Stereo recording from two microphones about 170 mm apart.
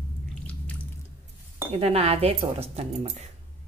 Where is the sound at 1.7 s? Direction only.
35° right (ahead or behind).